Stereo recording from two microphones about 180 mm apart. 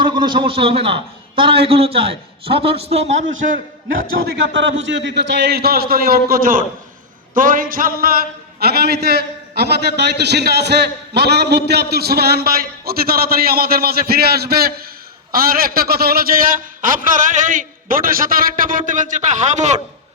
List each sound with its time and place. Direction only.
0.0 s a man's voice: 25° right (ahead or behind)
3.4 s a man's voice: 50° right (ahead or behind)
3.9 s a man's voice: 75° right (ahead or behind); by 19.8 s 40° right (ahead or behind)